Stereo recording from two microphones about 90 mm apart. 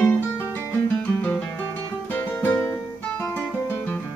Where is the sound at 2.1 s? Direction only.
20° left (ahead or behind).